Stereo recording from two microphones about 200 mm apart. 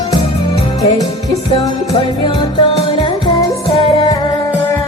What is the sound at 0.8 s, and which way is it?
Music, 15° left (ahead or behind).